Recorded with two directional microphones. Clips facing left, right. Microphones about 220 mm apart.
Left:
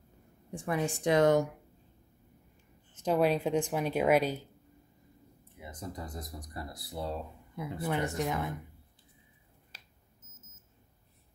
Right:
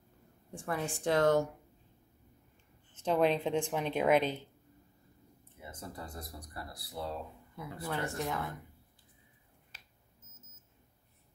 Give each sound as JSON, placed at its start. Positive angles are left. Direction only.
{"t": 0.5, "sound": "a woman's voice", "side_deg": 15}
{"t": 3.1, "sound": "speech", "side_deg": 10}
{"t": 5.6, "sound": "speech", "side_deg": 15}
{"t": 9.7, "sound": "a sound", "side_deg": 35}